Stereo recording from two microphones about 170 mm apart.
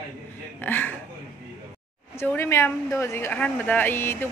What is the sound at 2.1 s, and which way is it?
A man's voice, 15° left (ahead or behind).